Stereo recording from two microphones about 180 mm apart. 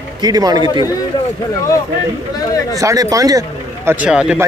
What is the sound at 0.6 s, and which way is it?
Speech, 25° left (ahead or behind).